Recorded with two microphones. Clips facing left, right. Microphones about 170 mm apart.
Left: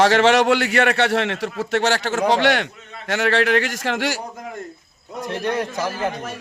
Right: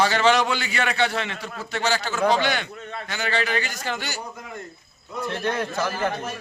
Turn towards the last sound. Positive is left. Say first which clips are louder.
# left 1 dB
turn(degrees=15)  # may be behind; listen again after turning